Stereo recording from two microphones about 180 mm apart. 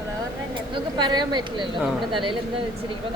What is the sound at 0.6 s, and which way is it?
Speech, 25° right (ahead or behind).